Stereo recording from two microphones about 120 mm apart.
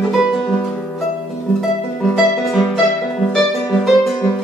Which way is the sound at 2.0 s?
5° left (ahead or behind).